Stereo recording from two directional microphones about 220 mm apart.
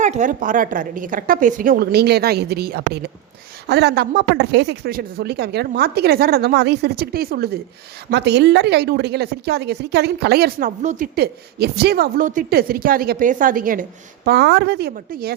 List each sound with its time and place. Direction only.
0.0 s a woman's voice: 35° right (ahead or behind)